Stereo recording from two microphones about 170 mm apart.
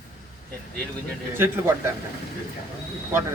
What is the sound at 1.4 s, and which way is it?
Speech, 15° right (ahead or behind).